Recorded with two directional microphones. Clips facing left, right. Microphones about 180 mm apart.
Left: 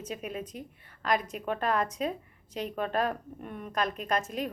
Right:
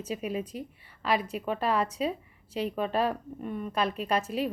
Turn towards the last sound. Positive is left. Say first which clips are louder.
# right 2 dB
turn(degrees=-10)  # may be behind; listen again after turning